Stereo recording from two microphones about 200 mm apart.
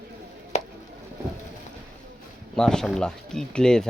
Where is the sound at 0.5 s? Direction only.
35° left (ahead or behind).